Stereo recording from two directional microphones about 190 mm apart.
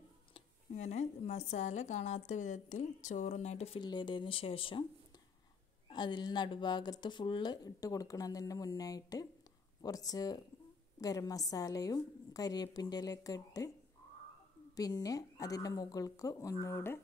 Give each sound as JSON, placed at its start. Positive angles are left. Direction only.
{"t": 0.3, "sound": "speech", "side_deg": 35}
{"t": 5.9, "sound": "speech", "side_deg": 25}
{"t": 14.8, "sound": "speech", "side_deg": 20}